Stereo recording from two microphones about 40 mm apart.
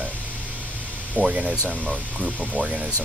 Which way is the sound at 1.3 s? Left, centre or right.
Right.